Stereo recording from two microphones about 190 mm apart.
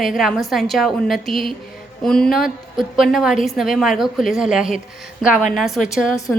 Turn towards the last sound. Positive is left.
turn(degrees=15)  # may be behind; listen again after turning